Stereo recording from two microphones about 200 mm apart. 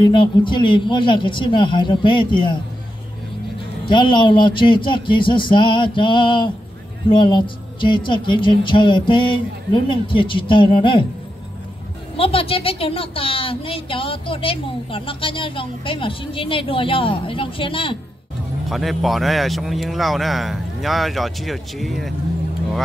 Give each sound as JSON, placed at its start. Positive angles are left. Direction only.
{"t": 0.0, "sound": "a woman's voice", "side_deg": 25}
{"t": 3.9, "sound": "a woman's voice", "side_deg": 25}
{"t": 12.2, "sound": "a woman's voice", "side_deg": 30}
{"t": 18.7, "sound": "a man's voice", "side_deg": 0}